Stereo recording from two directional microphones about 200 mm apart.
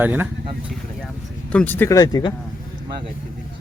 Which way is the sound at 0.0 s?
10° right (ahead or behind).